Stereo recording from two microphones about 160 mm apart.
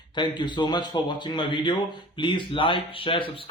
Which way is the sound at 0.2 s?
30° left (ahead or behind).